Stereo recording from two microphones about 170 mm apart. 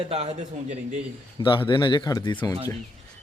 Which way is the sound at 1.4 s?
30° left (ahead or behind).